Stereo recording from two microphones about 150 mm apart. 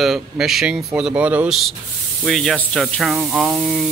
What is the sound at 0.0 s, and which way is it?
Speech, centre (ahead or behind).